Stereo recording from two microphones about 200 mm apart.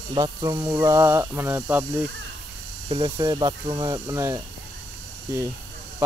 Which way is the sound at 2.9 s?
20° right (ahead or behind).